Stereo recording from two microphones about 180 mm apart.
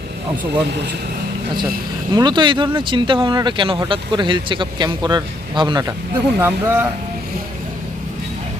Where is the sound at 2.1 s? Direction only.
25° right (ahead or behind).